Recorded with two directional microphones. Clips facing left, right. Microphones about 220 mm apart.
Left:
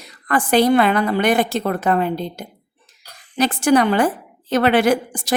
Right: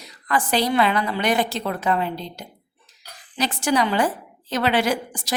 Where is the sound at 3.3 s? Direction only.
55° left (ahead or behind).